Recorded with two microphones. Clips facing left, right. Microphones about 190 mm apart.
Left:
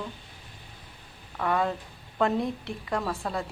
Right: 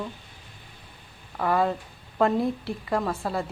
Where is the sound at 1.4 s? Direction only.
5° right (ahead or behind).